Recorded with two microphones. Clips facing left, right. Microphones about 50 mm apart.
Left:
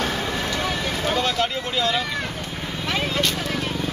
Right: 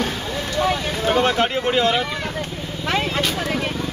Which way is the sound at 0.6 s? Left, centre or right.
Right.